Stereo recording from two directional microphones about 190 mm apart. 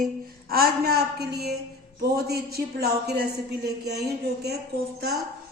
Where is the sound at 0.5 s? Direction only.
55° right (ahead or behind).